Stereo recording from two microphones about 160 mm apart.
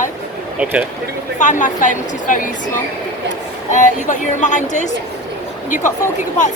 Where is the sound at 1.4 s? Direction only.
50° left (ahead or behind).